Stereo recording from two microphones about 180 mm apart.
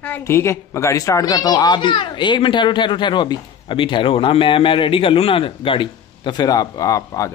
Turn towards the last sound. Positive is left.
turn(degrees=20)  # may be behind; listen again after turning